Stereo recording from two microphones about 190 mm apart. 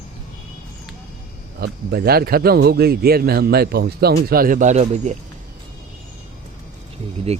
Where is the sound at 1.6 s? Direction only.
55° right (ahead or behind); by 5.1 s 40° right (ahead or behind).